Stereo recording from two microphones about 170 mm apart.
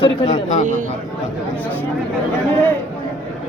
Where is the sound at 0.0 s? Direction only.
40° left (ahead or behind).